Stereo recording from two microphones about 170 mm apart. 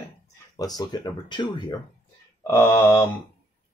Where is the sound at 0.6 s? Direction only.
20° left (ahead or behind).